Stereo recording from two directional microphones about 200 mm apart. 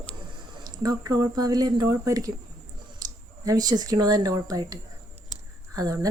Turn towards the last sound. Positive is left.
turn(degrees=-15)  # may be behind; listen again after turning